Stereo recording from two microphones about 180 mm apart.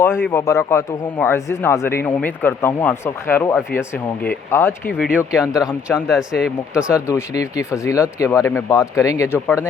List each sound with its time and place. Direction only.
0.0 s speech: 15° left (ahead or behind)
5.1 s speech: 5° right (ahead or behind)
7.1 s speech: 20° left (ahead or behind)